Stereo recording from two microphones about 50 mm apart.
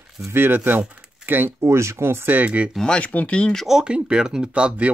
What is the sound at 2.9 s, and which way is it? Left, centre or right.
Speech, left.